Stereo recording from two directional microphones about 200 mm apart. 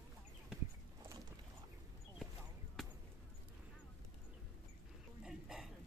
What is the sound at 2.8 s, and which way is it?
Basketball bounce, centre (ahead or behind).